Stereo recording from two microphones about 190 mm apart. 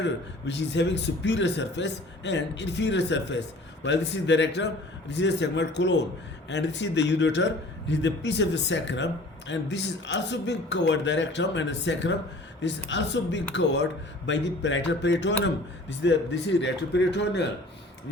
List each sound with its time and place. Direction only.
0.0 s a man's voice: 65° left (ahead or behind)